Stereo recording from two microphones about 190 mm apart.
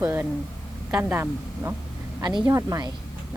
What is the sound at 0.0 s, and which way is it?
A woman's voice, 10° right (ahead or behind).